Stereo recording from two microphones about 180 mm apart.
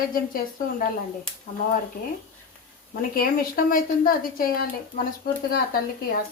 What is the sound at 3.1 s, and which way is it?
A woman's voice, 55° left (ahead or behind).